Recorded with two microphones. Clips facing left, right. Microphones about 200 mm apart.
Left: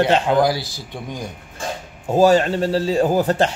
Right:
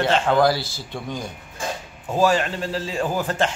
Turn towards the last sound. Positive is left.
turn(degrees=35)  # may be behind; listen again after turning